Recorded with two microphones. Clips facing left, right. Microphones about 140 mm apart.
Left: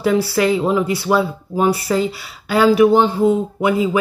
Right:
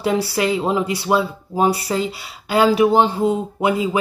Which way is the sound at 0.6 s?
20° right (ahead or behind).